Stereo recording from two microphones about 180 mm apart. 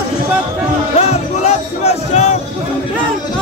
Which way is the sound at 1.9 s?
35° left (ahead or behind).